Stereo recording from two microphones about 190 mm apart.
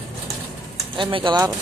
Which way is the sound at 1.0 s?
25° right (ahead or behind).